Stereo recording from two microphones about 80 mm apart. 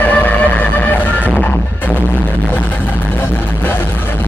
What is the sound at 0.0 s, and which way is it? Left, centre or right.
Vehicle, left.